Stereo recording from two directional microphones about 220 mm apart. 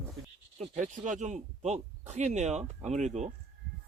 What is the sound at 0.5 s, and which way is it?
Speech, 30° right (ahead or behind).